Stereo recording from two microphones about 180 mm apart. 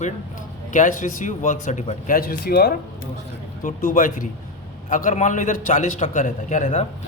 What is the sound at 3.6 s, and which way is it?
Speech, 50° left (ahead or behind).